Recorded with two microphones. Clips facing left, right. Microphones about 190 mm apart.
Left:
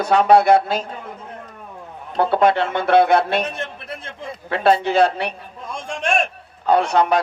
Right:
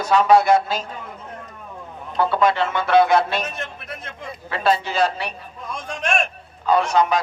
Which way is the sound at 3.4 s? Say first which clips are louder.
Left 3 dB; 30° left (ahead or behind).